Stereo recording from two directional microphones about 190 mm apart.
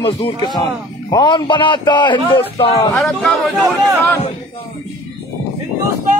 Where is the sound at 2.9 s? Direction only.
Centre (ahead or behind).